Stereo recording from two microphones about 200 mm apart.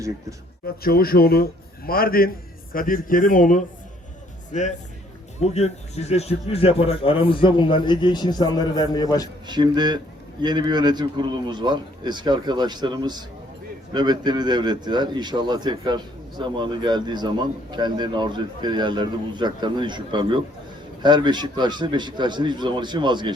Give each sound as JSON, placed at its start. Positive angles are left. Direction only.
{"t": 0.8, "sound": "a man's voice", "side_deg": 50}
{"t": 9.5, "sound": "a man's voice", "side_deg": -20}